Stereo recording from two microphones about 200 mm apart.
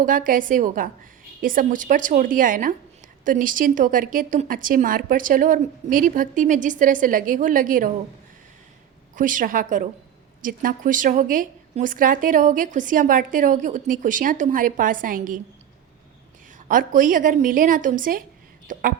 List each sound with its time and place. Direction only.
0.0 s a woman's voice: 40° right (ahead or behind)
9.1 s a woman's voice: 40° right (ahead or behind)
16.6 s a woman's voice: 40° right (ahead or behind)